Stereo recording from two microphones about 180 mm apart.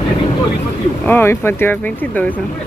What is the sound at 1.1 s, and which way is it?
Speech, 10° left (ahead or behind).